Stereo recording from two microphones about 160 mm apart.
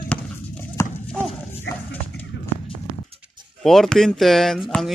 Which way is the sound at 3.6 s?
Centre (ahead or behind).